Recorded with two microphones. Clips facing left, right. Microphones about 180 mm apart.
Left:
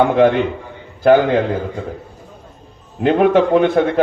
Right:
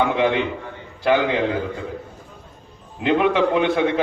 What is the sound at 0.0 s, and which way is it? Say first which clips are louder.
A man's voice: left 6 dB; 45° left (ahead or behind).